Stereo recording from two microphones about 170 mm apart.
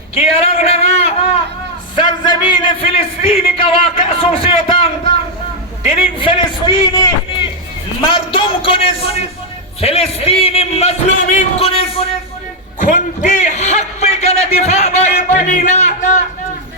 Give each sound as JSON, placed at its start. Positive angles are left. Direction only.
{"t": 0.2, "sound": "speech", "side_deg": 35}
{"t": 2.0, "sound": "music", "side_deg": 25}
{"t": 3.6, "sound": "a man's voice", "side_deg": 30}
{"t": 6.1, "sound": "a man's voice", "side_deg": 30}
{"t": 8.1, "sound": "a man's voice", "side_deg": 30}
{"t": 12.8, "sound": "a man's voice", "side_deg": 45}